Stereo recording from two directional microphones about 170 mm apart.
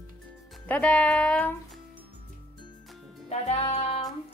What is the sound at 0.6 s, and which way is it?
Speech, 5° left (ahead or behind).